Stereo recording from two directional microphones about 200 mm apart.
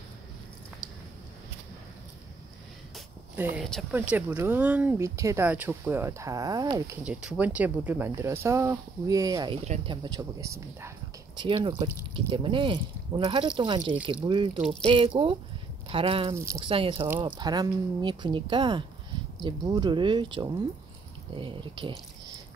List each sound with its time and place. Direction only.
3.3 s speech: 10° right (ahead or behind)
7.1 s speech: 5° right (ahead or behind); by 21.9 s 25° right (ahead or behind)